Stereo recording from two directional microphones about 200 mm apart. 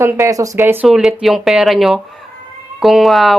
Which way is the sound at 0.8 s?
Centre (ahead or behind).